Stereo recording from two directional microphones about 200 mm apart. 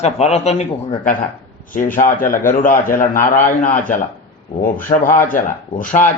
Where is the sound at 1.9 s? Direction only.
45° left (ahead or behind).